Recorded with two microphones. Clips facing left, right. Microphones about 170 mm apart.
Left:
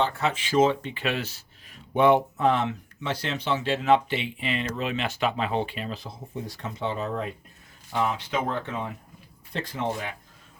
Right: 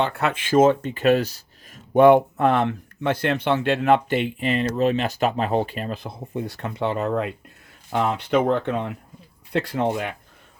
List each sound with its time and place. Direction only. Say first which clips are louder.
0.0 s speech: right 3 dB; 60° right (ahead or behind)